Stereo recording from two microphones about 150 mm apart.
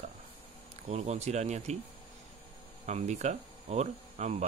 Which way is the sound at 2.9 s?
50° right (ahead or behind).